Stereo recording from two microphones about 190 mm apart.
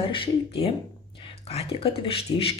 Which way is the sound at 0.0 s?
30° left (ahead or behind).